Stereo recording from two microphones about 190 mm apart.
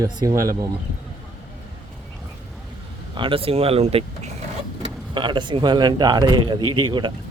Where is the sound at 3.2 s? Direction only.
30° right (ahead or behind).